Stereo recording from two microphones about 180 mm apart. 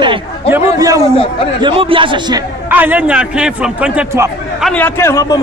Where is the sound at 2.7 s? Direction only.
10° right (ahead or behind); by 5.4 s 15° left (ahead or behind).